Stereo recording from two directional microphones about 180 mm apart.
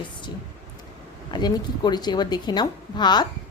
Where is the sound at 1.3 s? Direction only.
25° left (ahead or behind).